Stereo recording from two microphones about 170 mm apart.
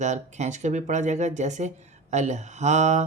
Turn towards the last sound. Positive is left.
turn(degrees=-45)  # may be behind; listen again after turning